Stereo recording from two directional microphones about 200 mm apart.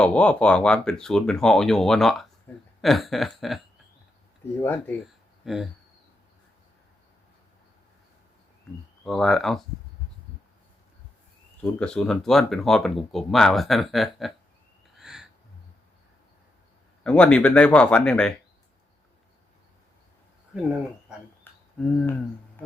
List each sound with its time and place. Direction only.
0.0 s speech: 5° left (ahead or behind)
5.0 s a sound: centre (ahead or behind)
9.0 s speech: centre (ahead or behind)
11.6 s speech: 5° left (ahead or behind)
14.9 s a sound: 5° right (ahead or behind)
17.0 s speech: 5° left (ahead or behind)
21.8 s speech: centre (ahead or behind)